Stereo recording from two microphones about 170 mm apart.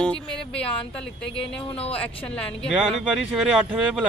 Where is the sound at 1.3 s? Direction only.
35° left (ahead or behind).